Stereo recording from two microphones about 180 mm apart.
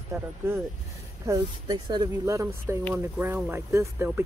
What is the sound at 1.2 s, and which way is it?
Speech, 20° right (ahead or behind).